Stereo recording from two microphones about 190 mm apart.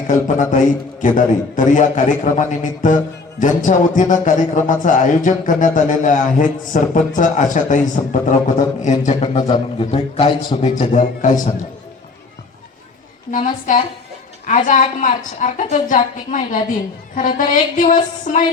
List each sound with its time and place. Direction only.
0.1 s a man's voice: 40° left (ahead or behind)
13.3 s a man's voice: 45° left (ahead or behind)